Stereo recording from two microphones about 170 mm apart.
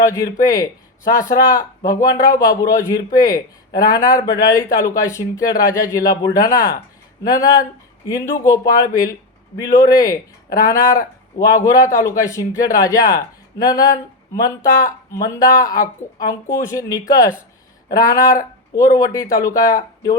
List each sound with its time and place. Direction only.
0.0 s speech: 20° left (ahead or behind)